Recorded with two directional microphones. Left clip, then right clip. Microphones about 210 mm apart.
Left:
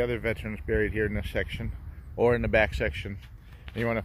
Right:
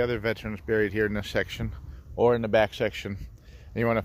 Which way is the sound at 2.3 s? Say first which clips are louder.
Right 1 dB; 10° right (ahead or behind).